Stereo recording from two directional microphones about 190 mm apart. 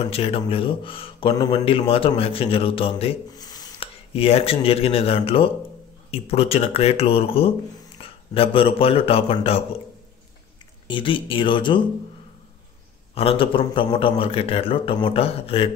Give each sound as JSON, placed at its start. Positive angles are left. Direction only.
{"t": 0.1, "sound": "a man's voice", "side_deg": 30}
{"t": 10.9, "sound": "speech", "side_deg": 25}
{"t": 13.1, "sound": "speech", "side_deg": 30}